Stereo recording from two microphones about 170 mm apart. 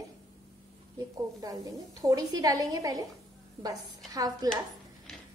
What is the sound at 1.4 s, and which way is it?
A woman's voice, 20° right (ahead or behind).